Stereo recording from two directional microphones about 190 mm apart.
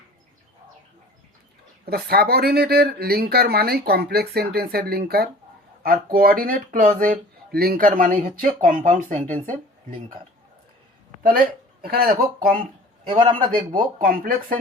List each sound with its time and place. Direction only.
1.8 s speech: 55° right (ahead or behind)
11.2 s speech: 50° right (ahead or behind)
13.7 s speech: 50° right (ahead or behind)